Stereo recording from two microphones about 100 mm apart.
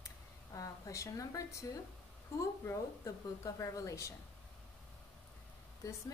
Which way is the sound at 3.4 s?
35° left (ahead or behind).